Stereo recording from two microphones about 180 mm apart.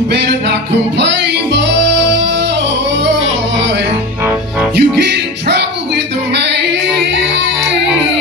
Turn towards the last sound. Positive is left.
turn(degrees=-75)  # may be behind; listen again after turning